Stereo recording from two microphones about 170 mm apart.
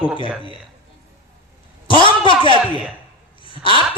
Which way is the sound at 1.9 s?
30° left (ahead or behind).